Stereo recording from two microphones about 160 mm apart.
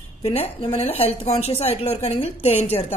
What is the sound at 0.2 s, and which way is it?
A woman's voice, 40° left (ahead or behind).